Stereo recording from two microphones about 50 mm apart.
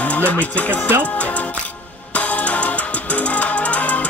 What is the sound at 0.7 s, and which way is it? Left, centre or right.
Speech, right.